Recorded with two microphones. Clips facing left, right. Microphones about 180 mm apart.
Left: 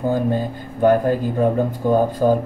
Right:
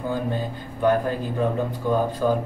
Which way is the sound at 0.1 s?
45° left (ahead or behind).